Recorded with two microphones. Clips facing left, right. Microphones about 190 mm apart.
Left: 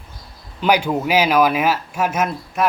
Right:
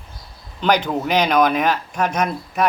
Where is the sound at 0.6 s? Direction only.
10° left (ahead or behind).